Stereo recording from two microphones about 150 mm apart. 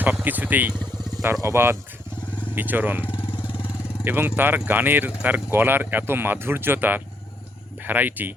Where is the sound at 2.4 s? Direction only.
10° right (ahead or behind).